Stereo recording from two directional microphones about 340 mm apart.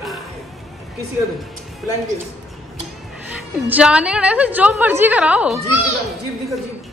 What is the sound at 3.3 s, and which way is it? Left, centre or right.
A woman's voice, centre.